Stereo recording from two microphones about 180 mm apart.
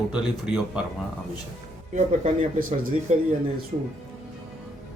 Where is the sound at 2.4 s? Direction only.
50° right (ahead or behind).